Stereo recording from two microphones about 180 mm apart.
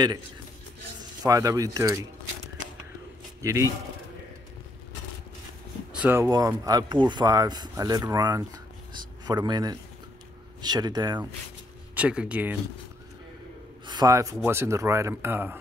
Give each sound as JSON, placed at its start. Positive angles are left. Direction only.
{"t": 1.2, "sound": "speech", "side_deg": -20}
{"t": 3.4, "sound": "speech", "side_deg": -15}
{"t": 5.9, "sound": "speech", "side_deg": -10}
{"t": 11.9, "sound": "speech", "side_deg": -5}
{"t": 13.8, "sound": "speech", "side_deg": -20}